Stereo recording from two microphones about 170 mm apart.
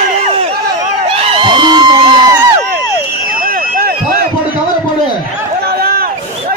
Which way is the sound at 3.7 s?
60° right (ahead or behind).